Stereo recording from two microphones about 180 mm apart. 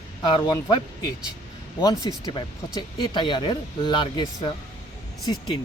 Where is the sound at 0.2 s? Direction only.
20° left (ahead or behind).